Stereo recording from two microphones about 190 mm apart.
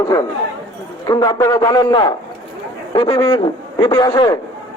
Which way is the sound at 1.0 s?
20° left (ahead or behind).